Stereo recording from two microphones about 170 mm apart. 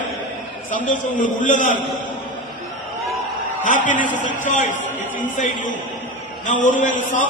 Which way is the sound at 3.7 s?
50° left (ahead or behind).